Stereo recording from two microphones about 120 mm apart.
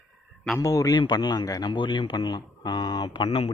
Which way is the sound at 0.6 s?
30° left (ahead or behind).